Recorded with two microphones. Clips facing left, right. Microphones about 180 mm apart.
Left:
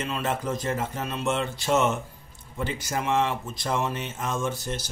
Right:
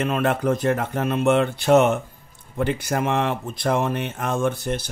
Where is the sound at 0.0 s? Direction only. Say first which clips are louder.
Right 7 dB; 60° right (ahead or behind).